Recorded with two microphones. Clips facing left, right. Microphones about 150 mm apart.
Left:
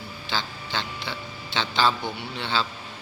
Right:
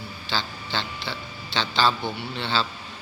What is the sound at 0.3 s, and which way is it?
A man's voice, 15° left (ahead or behind).